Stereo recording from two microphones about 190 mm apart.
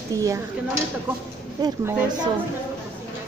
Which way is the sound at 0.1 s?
15° right (ahead or behind).